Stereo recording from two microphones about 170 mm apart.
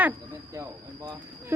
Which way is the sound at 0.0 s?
15° right (ahead or behind).